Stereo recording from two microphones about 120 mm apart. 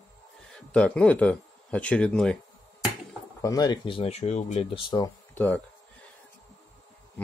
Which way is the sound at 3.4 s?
30° left (ahead or behind).